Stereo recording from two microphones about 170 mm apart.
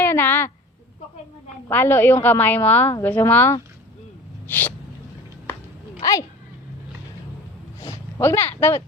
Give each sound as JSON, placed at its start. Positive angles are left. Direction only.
{"t": 0.0, "sound": "a sound", "side_deg": 10}
{"t": 1.7, "sound": "a woman's voice", "side_deg": 10}
{"t": 6.0, "sound": "speech", "side_deg": 20}
{"t": 7.8, "sound": "speech", "side_deg": 15}